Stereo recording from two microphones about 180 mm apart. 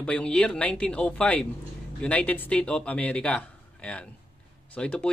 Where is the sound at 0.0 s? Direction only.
5° left (ahead or behind).